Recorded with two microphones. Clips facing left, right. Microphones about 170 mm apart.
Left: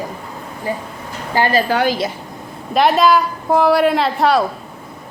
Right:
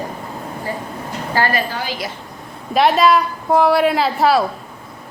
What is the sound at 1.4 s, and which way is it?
Speech, 15° left (ahead or behind).